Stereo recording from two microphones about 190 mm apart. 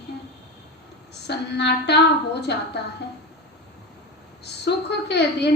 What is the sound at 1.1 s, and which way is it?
A woman's voice, 60° left (ahead or behind).